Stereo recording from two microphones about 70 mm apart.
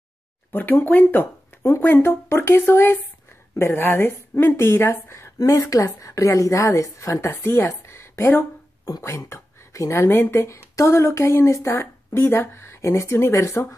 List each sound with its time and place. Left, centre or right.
0.5 s a woman's voice: left